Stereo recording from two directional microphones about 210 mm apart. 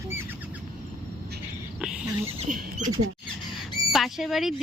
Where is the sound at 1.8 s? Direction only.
5° right (ahead or behind).